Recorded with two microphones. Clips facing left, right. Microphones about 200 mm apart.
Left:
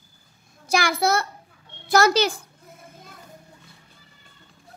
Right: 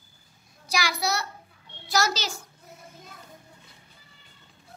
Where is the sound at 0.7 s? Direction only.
55° left (ahead or behind).